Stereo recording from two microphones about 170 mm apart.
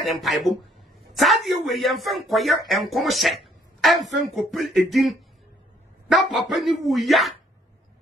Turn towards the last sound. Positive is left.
turn(degrees=0)  # may be behind; listen again after turning